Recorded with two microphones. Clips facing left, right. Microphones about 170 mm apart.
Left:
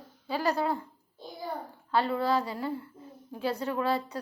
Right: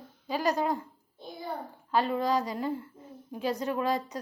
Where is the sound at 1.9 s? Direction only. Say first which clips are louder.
Even; 15° right (ahead or behind).